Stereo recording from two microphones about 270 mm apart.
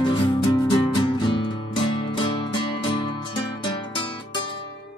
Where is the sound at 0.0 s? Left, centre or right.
Centre.